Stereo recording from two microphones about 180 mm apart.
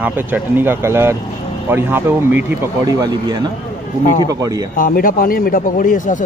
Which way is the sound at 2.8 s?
25° right (ahead or behind).